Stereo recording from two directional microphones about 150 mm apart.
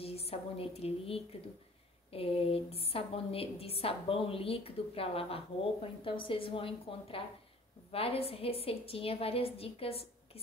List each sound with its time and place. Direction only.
0.0 s a woman's voice: 40° left (ahead or behind)